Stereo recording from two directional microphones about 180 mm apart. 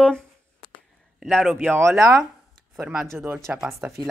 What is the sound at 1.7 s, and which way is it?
Speech, 15° right (ahead or behind).